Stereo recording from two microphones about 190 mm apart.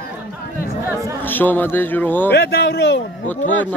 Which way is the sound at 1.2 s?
10° left (ahead or behind).